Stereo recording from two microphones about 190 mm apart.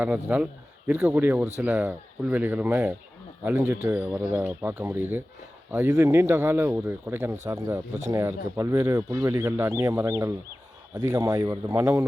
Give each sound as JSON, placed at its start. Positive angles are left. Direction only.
{"t": 0.0, "sound": "speech", "side_deg": -10}